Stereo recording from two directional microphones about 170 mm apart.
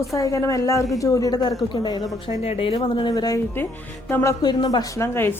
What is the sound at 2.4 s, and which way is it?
A woman's voice, 35° left (ahead or behind).